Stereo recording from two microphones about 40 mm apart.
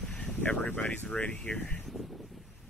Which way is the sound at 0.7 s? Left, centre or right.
Left.